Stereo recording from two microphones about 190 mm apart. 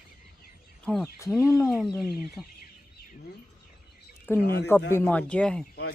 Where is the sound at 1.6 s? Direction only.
Centre (ahead or behind).